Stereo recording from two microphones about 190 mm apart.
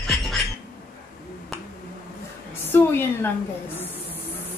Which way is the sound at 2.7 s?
10° left (ahead or behind).